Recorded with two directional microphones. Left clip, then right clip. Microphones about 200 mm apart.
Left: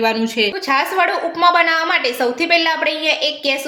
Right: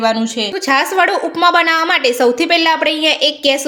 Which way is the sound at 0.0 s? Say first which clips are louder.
Right 1 dB; 30° right (ahead or behind).